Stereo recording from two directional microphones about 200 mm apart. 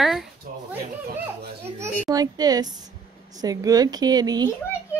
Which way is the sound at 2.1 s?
20° right (ahead or behind).